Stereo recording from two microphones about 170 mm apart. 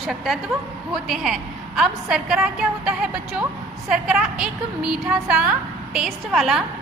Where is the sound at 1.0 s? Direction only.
Centre (ahead or behind).